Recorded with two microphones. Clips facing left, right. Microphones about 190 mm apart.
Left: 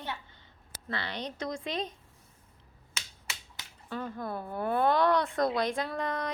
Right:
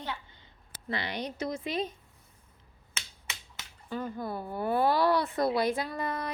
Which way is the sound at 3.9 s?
5° right (ahead or behind).